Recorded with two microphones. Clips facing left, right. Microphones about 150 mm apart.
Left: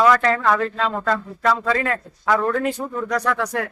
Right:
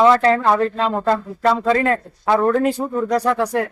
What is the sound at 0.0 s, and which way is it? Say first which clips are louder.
Speech: right 3 dB; 30° right (ahead or behind).